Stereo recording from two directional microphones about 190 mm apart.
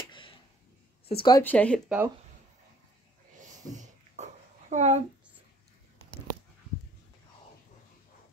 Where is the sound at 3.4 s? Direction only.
40° right (ahead or behind).